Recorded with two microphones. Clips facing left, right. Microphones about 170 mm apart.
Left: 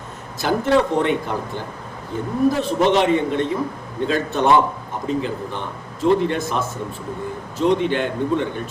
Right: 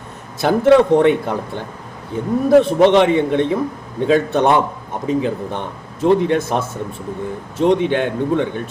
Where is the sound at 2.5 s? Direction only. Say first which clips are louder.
Right 9 dB; 60° right (ahead or behind).